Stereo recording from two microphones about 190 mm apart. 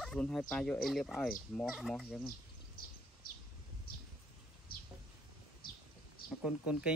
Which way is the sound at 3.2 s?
50° left (ahead or behind).